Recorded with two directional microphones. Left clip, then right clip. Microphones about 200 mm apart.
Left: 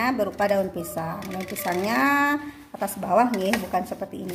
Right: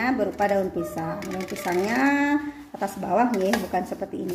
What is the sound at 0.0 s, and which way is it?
Speech, 25° left (ahead or behind).